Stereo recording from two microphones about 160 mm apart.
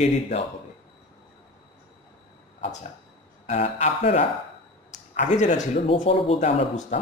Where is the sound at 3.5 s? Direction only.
40° left (ahead or behind).